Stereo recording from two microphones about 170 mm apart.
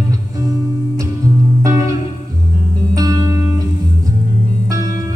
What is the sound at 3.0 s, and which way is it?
Music, 20° right (ahead or behind).